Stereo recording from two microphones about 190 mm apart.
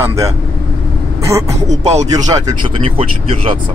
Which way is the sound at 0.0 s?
15° right (ahead or behind).